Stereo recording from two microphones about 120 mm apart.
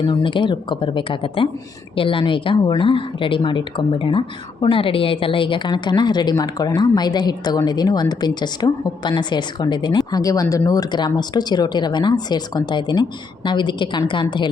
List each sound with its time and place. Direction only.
0.0 s a woman's voice: 40° left (ahead or behind)